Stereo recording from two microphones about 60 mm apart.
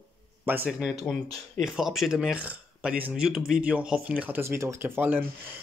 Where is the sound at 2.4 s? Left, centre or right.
Right.